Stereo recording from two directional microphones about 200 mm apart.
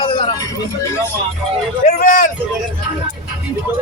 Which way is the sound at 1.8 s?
40° left (ahead or behind).